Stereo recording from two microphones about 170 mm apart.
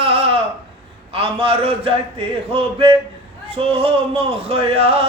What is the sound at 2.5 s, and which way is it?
Speech, 30° right (ahead or behind).